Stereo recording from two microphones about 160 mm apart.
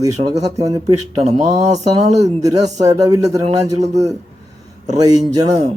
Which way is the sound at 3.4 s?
45° right (ahead or behind).